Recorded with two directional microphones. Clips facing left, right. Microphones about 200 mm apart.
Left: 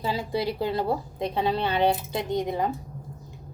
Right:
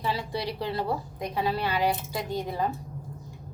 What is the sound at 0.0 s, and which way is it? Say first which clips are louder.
Speech: left 3 dB; 25° left (ahead or behind).